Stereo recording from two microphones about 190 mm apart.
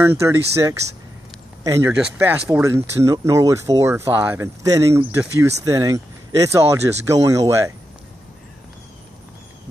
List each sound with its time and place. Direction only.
0.0 s speech: 10° right (ahead or behind)